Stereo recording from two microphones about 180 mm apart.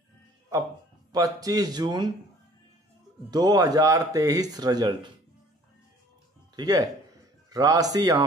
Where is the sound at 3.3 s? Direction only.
20° right (ahead or behind).